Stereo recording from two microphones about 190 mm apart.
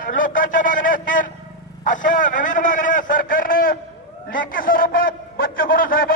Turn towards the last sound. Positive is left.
turn(degrees=50)  # may be behind; listen again after turning